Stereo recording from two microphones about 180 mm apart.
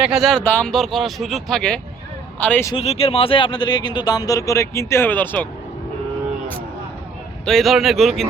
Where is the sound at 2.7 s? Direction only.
35° left (ahead or behind); by 5.5 s 10° left (ahead or behind).